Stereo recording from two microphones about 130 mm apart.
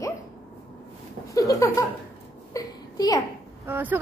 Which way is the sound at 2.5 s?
30° left (ahead or behind).